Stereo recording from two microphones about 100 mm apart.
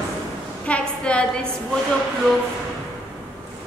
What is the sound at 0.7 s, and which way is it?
Speech, 10° left (ahead or behind).